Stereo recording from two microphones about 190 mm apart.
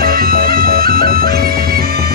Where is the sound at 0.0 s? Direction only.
50° right (ahead or behind).